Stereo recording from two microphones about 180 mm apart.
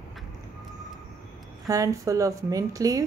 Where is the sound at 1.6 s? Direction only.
20° right (ahead or behind).